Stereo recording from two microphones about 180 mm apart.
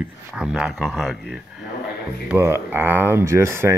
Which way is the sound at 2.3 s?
15° right (ahead or behind).